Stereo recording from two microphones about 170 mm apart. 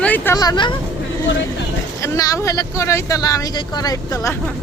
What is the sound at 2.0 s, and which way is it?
Speech, 20° left (ahead or behind).